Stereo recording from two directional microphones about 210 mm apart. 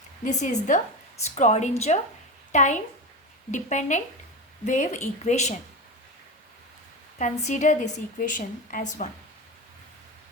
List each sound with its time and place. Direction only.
0.3 s a woman's voice: 35° left (ahead or behind)
7.2 s a woman's voice: 35° left (ahead or behind)